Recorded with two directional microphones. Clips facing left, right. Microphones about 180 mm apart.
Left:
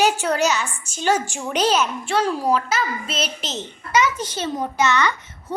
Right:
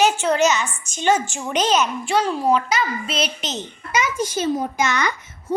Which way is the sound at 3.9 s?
10° right (ahead or behind).